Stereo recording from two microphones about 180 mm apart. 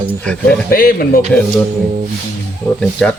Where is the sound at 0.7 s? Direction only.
55° left (ahead or behind).